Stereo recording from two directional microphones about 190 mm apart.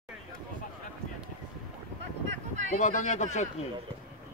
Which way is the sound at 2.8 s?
40° left (ahead or behind).